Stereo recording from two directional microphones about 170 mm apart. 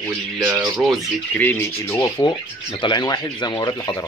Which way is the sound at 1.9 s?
20° left (ahead or behind).